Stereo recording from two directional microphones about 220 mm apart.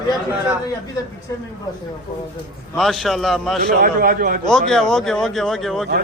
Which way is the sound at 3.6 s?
40° right (ahead or behind).